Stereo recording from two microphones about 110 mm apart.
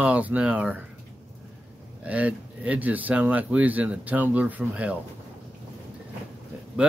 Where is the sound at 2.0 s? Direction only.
10° right (ahead or behind).